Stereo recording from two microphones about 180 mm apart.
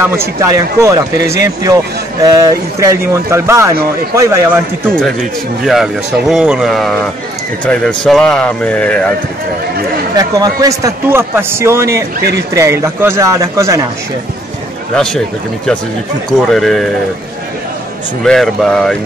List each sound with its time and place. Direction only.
0.0 s speech: 15° right (ahead or behind)
5.7 s speech: centre (ahead or behind)
10.1 s speech: 20° right (ahead or behind)
15.0 s speech: 5° left (ahead or behind)
18.2 s speech: centre (ahead or behind)